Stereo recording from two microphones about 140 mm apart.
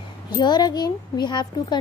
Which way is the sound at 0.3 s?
30° left (ahead or behind).